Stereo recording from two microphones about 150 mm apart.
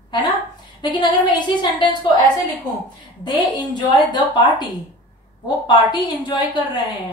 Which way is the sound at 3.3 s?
30° left (ahead or behind).